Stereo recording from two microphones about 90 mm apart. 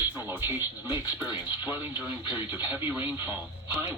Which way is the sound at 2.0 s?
55° left (ahead or behind).